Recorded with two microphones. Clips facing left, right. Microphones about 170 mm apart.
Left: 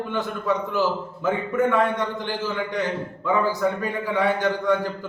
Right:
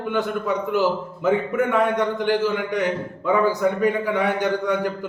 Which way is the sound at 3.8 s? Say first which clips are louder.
Right 4 dB; 15° right (ahead or behind).